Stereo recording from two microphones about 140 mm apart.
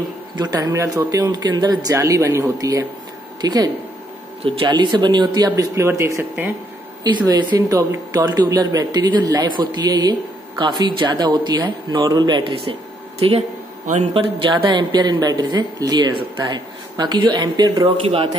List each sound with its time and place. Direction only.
0.4 s speech: 30° right (ahead or behind)
7.0 s speech: 30° right (ahead or behind)